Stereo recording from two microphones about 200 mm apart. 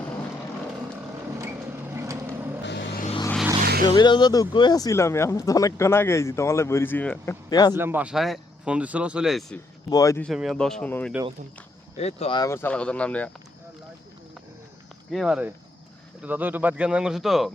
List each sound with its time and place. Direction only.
1.9 s vehicle: 15° right (ahead or behind)
2.6 s vehicle: 60° left (ahead or behind)
3.6 s vehicle: 45° right (ahead or behind)
3.8 s speech: 25° left (ahead or behind)
7.5 s speech: 20° left (ahead or behind)
7.8 s speech: 10° right (ahead or behind)
9.9 s speech: 15° left (ahead or behind)
10.2 s speech: centre (ahead or behind)
11.9 s speech: 30° left (ahead or behind)
12.5 s speech: 10° left (ahead or behind)
15.1 s speech: centre (ahead or behind)